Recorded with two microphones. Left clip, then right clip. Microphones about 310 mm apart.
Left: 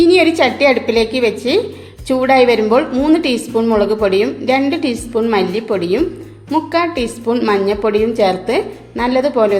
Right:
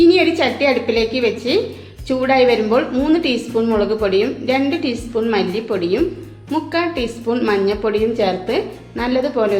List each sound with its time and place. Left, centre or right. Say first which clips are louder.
0.0 s a woman's voice: left 2 dB; left